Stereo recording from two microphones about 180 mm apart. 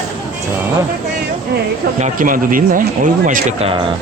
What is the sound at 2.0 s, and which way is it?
Speech, 50° right (ahead or behind).